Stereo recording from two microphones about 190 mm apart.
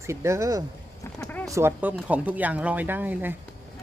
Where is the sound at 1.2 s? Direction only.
10° left (ahead or behind).